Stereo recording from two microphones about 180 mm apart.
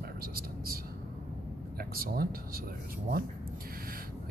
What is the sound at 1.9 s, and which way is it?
Speech, 55° right (ahead or behind).